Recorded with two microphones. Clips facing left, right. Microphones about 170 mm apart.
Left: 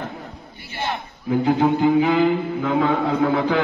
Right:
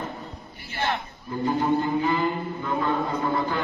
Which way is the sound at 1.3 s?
90° left.